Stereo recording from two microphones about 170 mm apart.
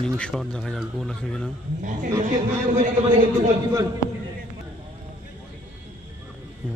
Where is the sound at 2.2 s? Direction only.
45° right (ahead or behind).